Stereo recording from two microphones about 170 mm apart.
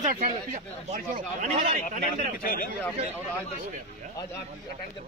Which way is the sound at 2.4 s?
55° left (ahead or behind).